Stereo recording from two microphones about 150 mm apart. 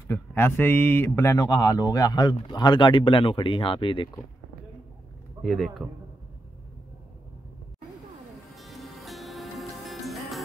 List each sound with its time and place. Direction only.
0.1 s speech: 15° left (ahead or behind); by 4.1 s 35° left (ahead or behind)
5.4 s speech: centre (ahead or behind)
8.5 s music: centre (ahead or behind)